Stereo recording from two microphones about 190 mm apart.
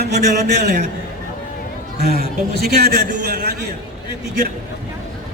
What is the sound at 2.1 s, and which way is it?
Speech, 55° right (ahead or behind).